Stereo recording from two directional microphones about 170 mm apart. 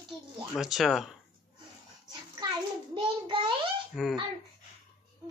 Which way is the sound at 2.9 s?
30° right (ahead or behind).